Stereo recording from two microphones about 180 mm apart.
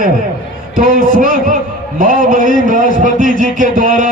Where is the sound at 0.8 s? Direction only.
50° right (ahead or behind).